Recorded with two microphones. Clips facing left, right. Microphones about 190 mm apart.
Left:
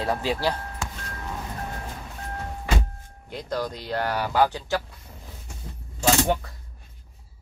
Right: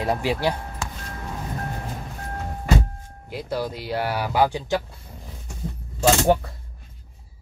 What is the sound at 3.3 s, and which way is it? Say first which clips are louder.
Speech: right 2 dB; 5° right (ahead or behind).